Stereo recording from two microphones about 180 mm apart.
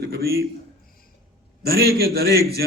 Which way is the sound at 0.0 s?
65° right (ahead or behind).